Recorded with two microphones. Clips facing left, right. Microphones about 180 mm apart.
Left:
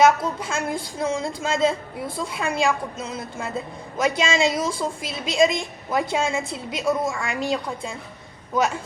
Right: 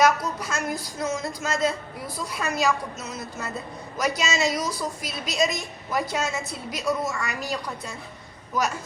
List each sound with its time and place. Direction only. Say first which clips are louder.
0.0 s a woman's voice: left 3 dB; 25° left (ahead or behind)